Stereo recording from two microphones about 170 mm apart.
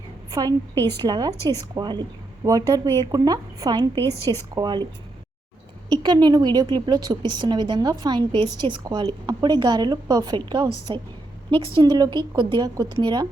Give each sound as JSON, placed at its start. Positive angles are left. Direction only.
{"t": 0.3, "sound": "a woman's voice", "side_deg": -20}
{"t": 5.9, "sound": "a woman's voice", "side_deg": -25}